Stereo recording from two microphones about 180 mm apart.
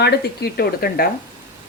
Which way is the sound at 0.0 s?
60° left (ahead or behind).